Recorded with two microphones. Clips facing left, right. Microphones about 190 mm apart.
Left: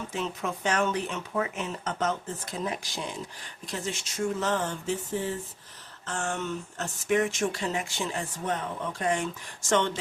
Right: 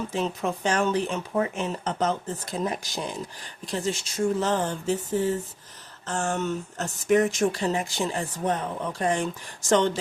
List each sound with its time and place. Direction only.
0.1 s speech: 35° right (ahead or behind)